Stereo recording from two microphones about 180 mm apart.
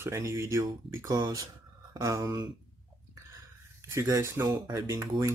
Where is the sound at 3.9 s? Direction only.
15° right (ahead or behind).